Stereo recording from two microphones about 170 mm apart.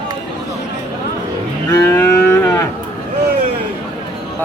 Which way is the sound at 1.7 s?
15° left (ahead or behind).